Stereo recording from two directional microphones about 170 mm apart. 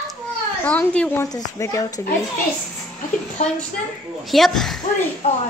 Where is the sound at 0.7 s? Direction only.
5° left (ahead or behind).